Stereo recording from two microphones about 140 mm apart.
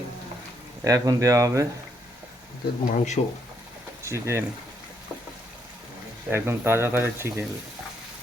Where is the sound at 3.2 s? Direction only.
55° left (ahead or behind).